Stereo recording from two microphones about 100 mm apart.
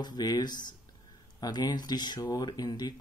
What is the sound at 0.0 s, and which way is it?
Speech, 45° left (ahead or behind).